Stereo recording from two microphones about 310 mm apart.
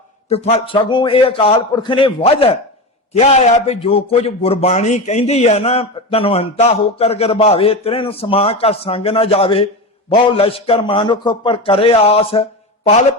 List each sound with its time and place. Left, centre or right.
0.3 s a man's voice: left